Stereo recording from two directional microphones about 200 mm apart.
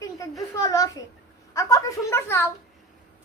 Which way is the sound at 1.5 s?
15° left (ahead or behind).